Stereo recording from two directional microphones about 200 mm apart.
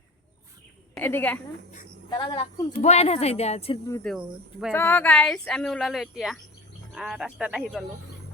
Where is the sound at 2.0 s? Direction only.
25° left (ahead or behind).